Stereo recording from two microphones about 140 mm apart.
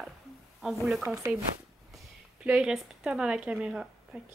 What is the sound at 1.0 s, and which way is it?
Speech, 20° right (ahead or behind).